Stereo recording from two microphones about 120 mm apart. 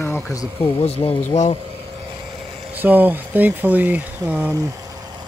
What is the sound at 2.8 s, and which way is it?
Speech, 15° right (ahead or behind).